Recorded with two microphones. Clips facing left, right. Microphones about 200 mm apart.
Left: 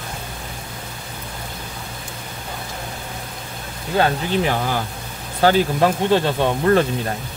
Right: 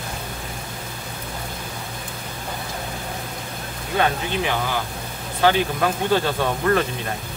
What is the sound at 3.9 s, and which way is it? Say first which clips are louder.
Speech: left 3 dB; 40° left (ahead or behind).